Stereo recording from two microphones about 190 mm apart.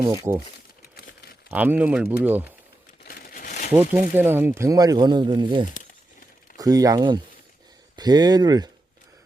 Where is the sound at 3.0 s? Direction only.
50° left (ahead or behind).